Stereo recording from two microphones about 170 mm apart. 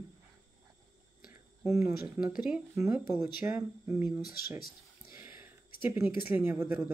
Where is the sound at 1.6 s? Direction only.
15° right (ahead or behind).